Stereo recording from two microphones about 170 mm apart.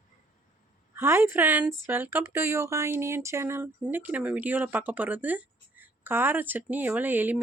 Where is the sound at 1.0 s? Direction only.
15° right (ahead or behind).